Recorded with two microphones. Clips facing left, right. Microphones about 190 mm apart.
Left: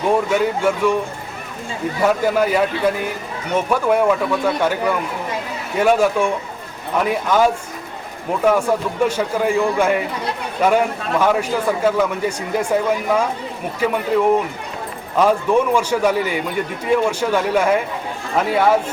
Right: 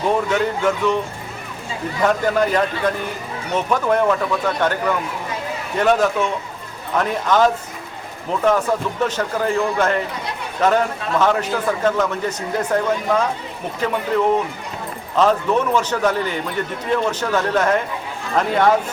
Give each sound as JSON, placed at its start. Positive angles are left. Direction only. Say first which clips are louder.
{"t": 0.3, "sound": "a man's voice", "louder": "left 1 dB", "side_deg": 10}
{"t": 2.0, "sound": "a man's voice", "louder": "left 1 dB", "side_deg": 10}